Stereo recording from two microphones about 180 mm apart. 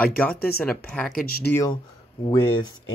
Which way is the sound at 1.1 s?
55° left (ahead or behind).